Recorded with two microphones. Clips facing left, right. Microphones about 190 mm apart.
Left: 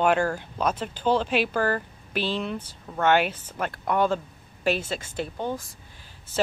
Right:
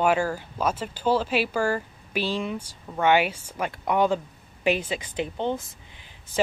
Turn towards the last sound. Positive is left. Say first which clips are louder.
# right 3 dB
turn(degrees=-20)  # may be behind; listen again after turning